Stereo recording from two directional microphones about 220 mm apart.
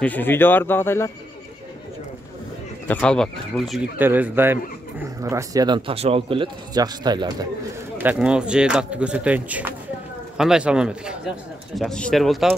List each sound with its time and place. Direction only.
0.0 s speech: 10° left (ahead or behind)
2.9 s a man's voice: 5° left (ahead or behind); by 7.4 s 20° right (ahead or behind)
8.0 s a man's voice: 5° right (ahead or behind)